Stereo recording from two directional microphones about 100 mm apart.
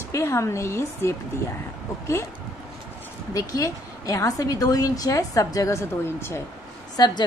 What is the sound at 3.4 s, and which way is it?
A woman's voice, 35° left (ahead or behind).